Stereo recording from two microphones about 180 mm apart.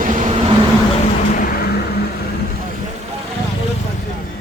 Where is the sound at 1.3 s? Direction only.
55° left (ahead or behind).